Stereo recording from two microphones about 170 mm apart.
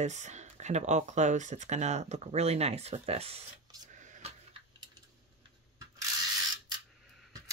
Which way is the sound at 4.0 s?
45° right (ahead or behind).